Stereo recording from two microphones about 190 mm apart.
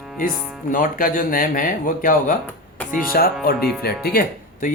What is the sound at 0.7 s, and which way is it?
Speech, 45° left (ahead or behind).